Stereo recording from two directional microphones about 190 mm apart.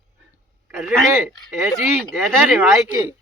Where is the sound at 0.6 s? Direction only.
5° right (ahead or behind).